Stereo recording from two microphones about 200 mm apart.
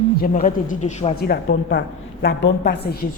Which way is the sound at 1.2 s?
50° left (ahead or behind).